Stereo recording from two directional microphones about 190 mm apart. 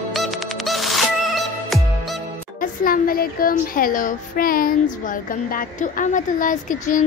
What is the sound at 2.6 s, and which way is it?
A woman's voice, 50° left (ahead or behind).